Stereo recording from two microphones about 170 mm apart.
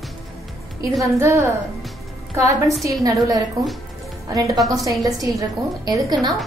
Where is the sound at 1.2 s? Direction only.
15° right (ahead or behind).